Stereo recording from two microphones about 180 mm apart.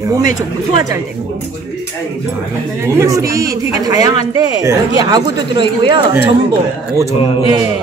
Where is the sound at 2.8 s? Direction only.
15° right (ahead or behind).